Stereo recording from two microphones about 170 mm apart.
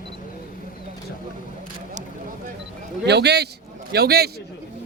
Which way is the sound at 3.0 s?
80° right.